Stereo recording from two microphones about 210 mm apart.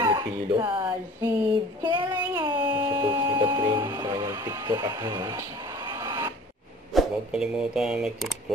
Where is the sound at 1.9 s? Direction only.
20° right (ahead or behind).